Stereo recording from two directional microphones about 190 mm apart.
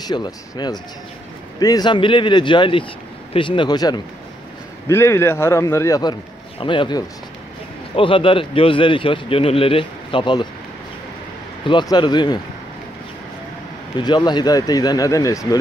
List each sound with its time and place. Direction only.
0.1 s a man's voice: 20° left (ahead or behind)
11.6 s a man's voice: 25° left (ahead or behind)
13.9 s a man's voice: 25° left (ahead or behind)